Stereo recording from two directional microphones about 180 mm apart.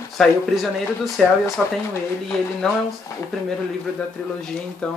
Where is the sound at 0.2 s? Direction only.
Centre (ahead or behind).